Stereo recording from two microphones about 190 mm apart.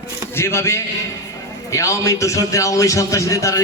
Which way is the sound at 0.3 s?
15° left (ahead or behind).